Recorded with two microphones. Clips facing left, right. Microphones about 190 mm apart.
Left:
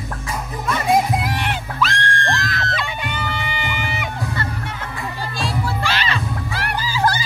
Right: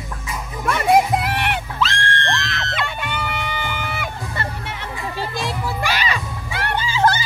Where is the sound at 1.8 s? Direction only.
25° right (ahead or behind).